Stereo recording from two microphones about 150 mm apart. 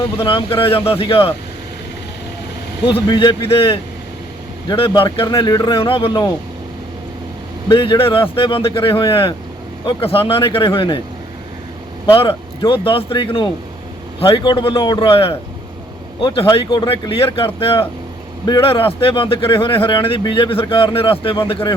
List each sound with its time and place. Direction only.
0.2 s a man's voice: 35° left (ahead or behind)
2.8 s a man's voice: 35° left (ahead or behind)
7.7 s a man's voice: 35° left (ahead or behind)
12.6 s a man's voice: 35° left (ahead or behind)